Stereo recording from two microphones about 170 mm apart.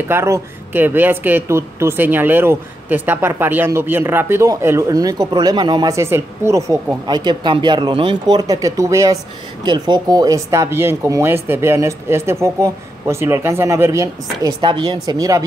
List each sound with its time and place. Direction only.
0.1 s speech: 15° right (ahead or behind)